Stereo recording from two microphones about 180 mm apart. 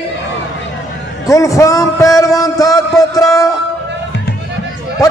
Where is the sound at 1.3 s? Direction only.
20° left (ahead or behind).